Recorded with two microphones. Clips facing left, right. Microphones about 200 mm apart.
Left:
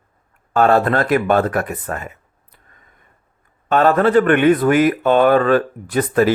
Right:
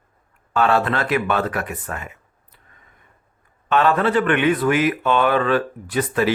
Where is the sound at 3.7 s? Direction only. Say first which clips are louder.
Left 4 dB; 45° left (ahead or behind).